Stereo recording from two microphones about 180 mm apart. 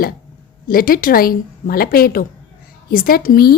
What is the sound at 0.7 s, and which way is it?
A woman's voice, 55° left (ahead or behind).